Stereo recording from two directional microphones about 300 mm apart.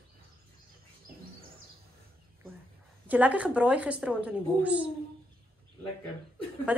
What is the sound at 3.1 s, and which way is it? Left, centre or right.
A woman's voice, centre.